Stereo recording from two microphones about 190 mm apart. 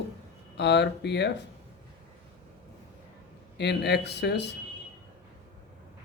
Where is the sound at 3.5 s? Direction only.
65° left (ahead or behind).